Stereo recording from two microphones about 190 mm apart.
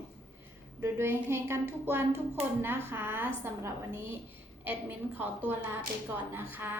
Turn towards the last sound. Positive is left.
turn(degrees=-10)  # may be behind; listen again after turning